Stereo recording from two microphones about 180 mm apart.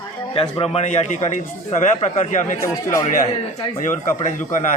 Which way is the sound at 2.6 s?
15° left (ahead or behind).